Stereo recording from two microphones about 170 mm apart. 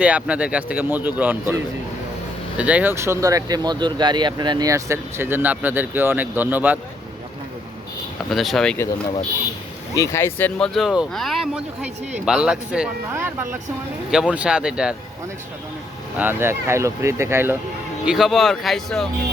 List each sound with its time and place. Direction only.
0.0 s speech: 5° right (ahead or behind)
2.6 s speech: 10° right (ahead or behind)
8.3 s speech: centre (ahead or behind)
9.9 s speech: 20° left (ahead or behind)
10.8 s speech: centre (ahead or behind)
16.1 s speech: 10° right (ahead or behind)
18.0 s speech: centre (ahead or behind)